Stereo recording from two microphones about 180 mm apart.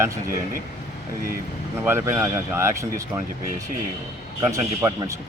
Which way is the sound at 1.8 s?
15° right (ahead or behind).